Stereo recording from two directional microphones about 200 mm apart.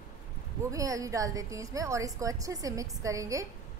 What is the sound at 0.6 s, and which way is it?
A woman's voice, 15° right (ahead or behind).